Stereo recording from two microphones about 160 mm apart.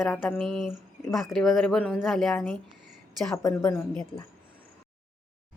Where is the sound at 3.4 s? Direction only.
20° left (ahead or behind).